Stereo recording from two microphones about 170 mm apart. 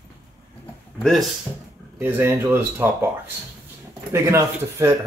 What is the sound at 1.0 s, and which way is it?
Speech, centre (ahead or behind).